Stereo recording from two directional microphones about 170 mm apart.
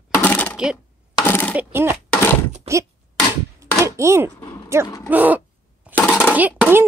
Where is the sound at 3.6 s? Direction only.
15° right (ahead or behind).